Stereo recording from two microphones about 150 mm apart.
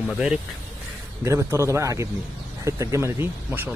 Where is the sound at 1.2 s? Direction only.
15° right (ahead or behind).